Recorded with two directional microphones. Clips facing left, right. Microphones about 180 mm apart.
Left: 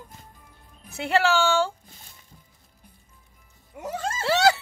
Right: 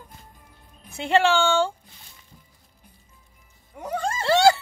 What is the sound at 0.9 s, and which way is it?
Speech, 5° left (ahead or behind).